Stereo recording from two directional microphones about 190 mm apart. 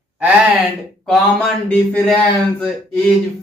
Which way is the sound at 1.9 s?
5° left (ahead or behind).